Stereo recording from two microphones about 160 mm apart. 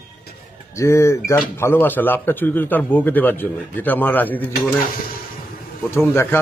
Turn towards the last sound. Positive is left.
turn(degrees=15)  # may be behind; listen again after turning